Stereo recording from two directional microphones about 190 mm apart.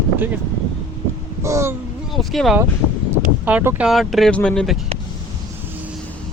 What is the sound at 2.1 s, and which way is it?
Speech, centre (ahead or behind).